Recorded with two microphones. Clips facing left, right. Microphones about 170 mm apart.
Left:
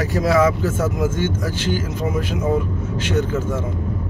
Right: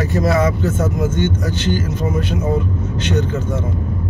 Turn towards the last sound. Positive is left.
turn(degrees=5)  # may be behind; listen again after turning